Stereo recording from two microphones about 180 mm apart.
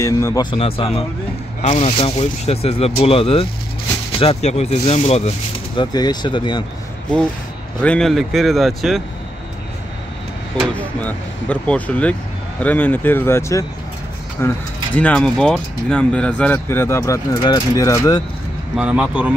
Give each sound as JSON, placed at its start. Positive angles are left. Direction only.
{"t": 0.0, "sound": "speech", "side_deg": 15}
{"t": 5.8, "sound": "speech", "side_deg": 25}
{"t": 7.8, "sound": "a man's voice", "side_deg": 5}
{"t": 10.8, "sound": "speech", "side_deg": 10}
{"t": 18.8, "sound": "speech", "side_deg": -5}